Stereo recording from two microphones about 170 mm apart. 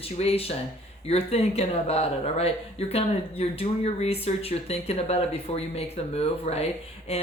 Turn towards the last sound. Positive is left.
turn(degrees=35)  # may be behind; listen again after turning